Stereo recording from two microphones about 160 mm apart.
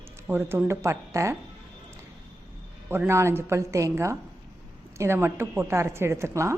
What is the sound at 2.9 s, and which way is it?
A woman's voice, 15° right (ahead or behind).